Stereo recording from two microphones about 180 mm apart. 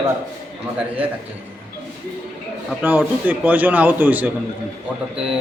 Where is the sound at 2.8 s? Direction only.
10° right (ahead or behind).